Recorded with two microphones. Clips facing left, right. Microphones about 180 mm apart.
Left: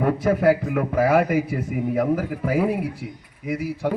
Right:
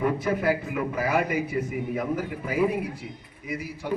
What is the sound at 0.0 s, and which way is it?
A man's voice, 55° left (ahead or behind).